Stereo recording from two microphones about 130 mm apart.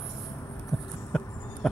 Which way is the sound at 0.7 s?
5° left (ahead or behind).